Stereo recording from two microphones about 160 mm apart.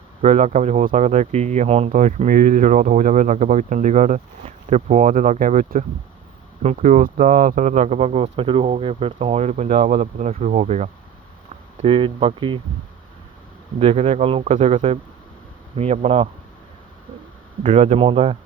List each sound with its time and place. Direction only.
0.2 s speech: 45° right (ahead or behind)
6.6 s speech: 45° right (ahead or behind)
11.8 s speech: 35° right (ahead or behind)
13.7 s speech: 40° right (ahead or behind)
17.6 s speech: 40° right (ahead or behind)